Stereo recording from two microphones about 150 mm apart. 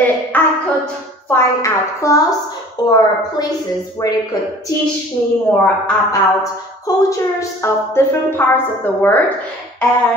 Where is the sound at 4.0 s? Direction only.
20° left (ahead or behind).